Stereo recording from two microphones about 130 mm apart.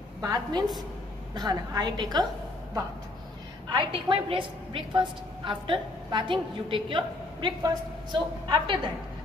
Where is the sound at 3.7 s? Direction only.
40° right (ahead or behind).